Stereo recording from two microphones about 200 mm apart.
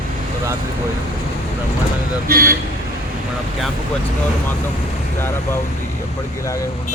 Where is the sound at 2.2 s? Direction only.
50° right (ahead or behind).